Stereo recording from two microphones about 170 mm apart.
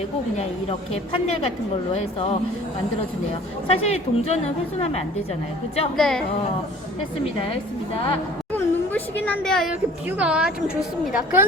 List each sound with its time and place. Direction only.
0.3 s a woman's voice: 35° left (ahead or behind)
3.7 s a woman's voice: 35° left (ahead or behind)
6.0 s a woman's voice: centre (ahead or behind)
8.5 s a sound: 10° left (ahead or behind)
10.1 s a woman's voice: 5° right (ahead or behind)